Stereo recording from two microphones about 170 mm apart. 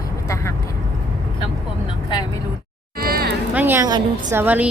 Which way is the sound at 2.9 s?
60° right (ahead or behind).